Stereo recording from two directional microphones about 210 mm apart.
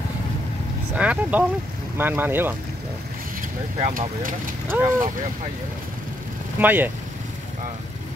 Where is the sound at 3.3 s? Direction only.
35° right (ahead or behind).